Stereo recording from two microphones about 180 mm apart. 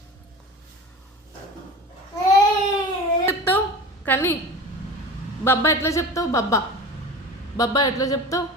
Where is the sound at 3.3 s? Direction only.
15° left (ahead or behind).